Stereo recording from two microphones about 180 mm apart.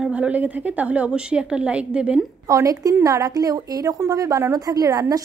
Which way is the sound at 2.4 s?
20° right (ahead or behind).